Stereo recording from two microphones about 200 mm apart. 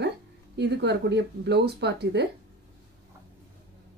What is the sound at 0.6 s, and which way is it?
Speech, 60° right (ahead or behind).